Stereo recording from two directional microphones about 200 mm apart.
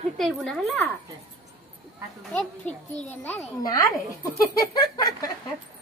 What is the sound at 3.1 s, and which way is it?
A child's voice, 15° left (ahead or behind).